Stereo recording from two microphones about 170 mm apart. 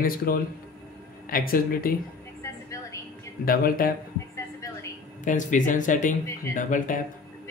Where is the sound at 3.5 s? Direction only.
60° left (ahead or behind).